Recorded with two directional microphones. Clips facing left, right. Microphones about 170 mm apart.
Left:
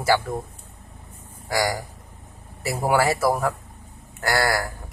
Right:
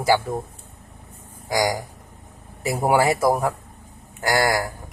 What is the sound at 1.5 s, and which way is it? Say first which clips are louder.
A man's voice: right 2 dB; 15° right (ahead or behind).